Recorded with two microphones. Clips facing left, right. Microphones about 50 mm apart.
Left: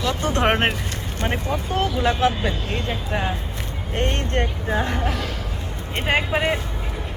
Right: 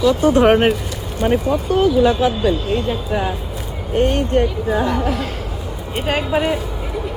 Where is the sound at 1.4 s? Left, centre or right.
Right.